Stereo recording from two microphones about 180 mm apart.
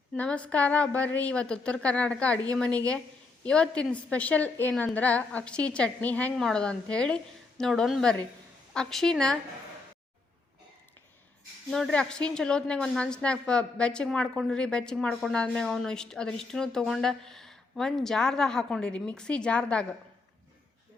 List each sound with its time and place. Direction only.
0.1 s a woman's voice: 5° left (ahead or behind)
11.7 s a woman's voice: 5° left (ahead or behind)